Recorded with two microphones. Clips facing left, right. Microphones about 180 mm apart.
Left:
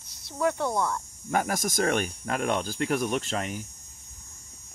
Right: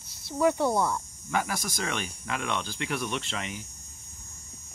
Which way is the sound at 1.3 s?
45° left (ahead or behind).